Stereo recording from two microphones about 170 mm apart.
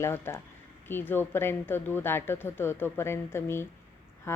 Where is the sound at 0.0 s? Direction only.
15° left (ahead or behind).